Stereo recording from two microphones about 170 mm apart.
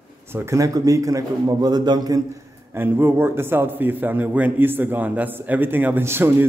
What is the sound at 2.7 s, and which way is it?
A man's voice, 10° right (ahead or behind).